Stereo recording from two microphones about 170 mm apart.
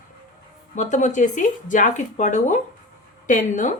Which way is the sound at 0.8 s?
45° left (ahead or behind).